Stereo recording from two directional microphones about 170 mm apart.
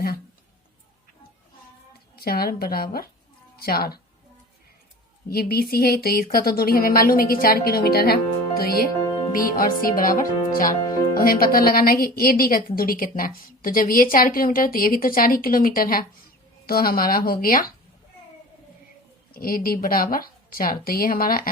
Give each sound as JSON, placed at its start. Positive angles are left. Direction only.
{"t": 2.1, "sound": "speech", "side_deg": 60}
{"t": 5.3, "sound": "speech", "side_deg": 65}
{"t": 19.3, "sound": "speech", "side_deg": 55}